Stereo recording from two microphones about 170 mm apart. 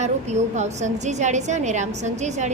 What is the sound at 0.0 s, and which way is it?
A woman's voice, 40° right (ahead or behind).